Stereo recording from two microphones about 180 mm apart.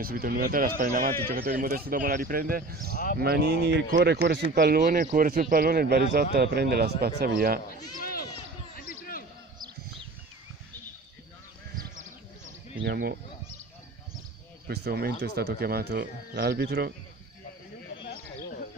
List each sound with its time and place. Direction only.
0.0 s speech: 55° right (ahead or behind)
8.0 s a sound: 55° left (ahead or behind)
8.7 s basketball bounce: 50° left (ahead or behind)
12.8 s speech: 60° right (ahead or behind)
14.7 s speech: 60° right (ahead or behind)